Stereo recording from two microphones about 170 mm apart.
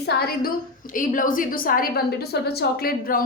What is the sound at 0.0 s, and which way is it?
A woman's voice, 70° left (ahead or behind).